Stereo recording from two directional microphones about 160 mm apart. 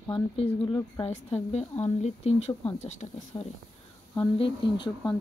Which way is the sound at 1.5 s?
45° left (ahead or behind).